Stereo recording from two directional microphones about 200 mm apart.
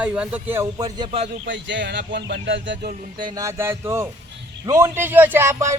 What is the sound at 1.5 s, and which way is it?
Speech, 65° right (ahead or behind).